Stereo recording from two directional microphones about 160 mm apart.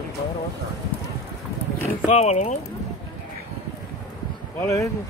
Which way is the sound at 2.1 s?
45° left (ahead or behind).